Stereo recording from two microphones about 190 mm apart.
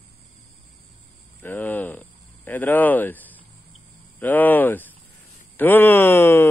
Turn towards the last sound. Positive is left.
turn(degrees=10)  # may be behind; listen again after turning